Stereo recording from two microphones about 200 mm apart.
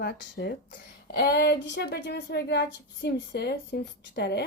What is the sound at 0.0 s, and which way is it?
A woman's voice, 50° left (ahead or behind).